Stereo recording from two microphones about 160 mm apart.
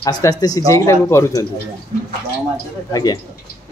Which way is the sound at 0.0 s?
25° left (ahead or behind).